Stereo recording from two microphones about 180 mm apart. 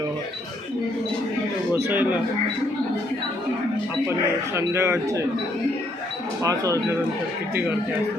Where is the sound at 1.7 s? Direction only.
10° right (ahead or behind).